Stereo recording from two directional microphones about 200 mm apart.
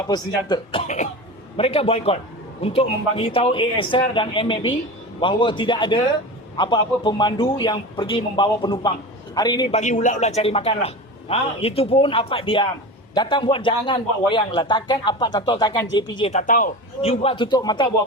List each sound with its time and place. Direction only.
0.1 s a man's voice: 20° left (ahead or behind)
9.7 s a man's voice: 40° left (ahead or behind); by 17.9 s 20° left (ahead or behind)